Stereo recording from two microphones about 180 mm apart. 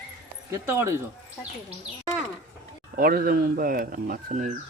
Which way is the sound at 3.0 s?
55° right (ahead or behind).